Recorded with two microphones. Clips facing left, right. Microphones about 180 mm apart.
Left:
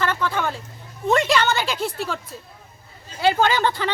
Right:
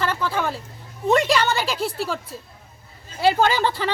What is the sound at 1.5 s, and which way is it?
Speech, 35° right (ahead or behind).